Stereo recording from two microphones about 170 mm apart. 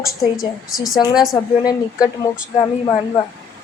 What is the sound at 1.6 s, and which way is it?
Speech, 20° left (ahead or behind).